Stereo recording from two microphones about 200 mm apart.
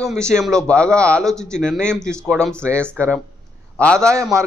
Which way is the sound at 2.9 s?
15° right (ahead or behind).